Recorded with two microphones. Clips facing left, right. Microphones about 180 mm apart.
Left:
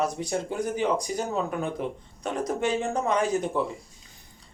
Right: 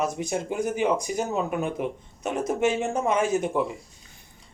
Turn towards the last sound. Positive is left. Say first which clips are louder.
# right 2 dB
turn(degrees=-15)  # may be behind; listen again after turning